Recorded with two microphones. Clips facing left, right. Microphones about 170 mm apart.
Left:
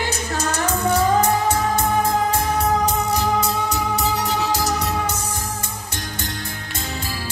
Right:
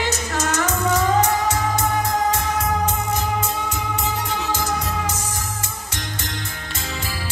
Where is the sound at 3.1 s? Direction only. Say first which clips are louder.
Left 3 dB; 35° left (ahead or behind).